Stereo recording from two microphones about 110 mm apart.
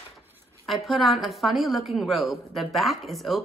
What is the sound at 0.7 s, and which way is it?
A woman's voice, centre (ahead or behind).